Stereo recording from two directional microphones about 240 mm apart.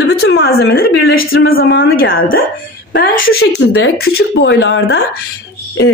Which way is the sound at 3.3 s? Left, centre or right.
Left.